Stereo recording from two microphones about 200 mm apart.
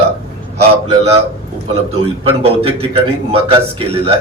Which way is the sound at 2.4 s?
30° right (ahead or behind).